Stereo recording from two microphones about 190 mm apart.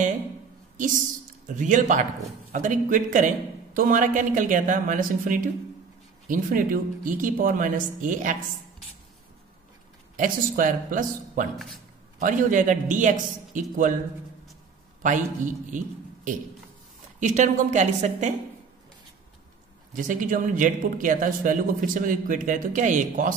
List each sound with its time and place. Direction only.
1.5 s a woman's voice: 40° right (ahead or behind)
10.1 s speech: 45° right (ahead or behind)
11.5 s a man's voice: centre (ahead or behind)
12.2 s speech: 45° right (ahead or behind)
15.0 s speech: 40° right (ahead or behind)
17.2 s a woman's voice: 40° right (ahead or behind)
20.0 s speech: 45° right (ahead or behind)